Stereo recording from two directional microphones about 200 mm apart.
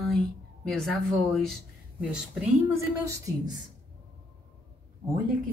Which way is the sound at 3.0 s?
15° right (ahead or behind).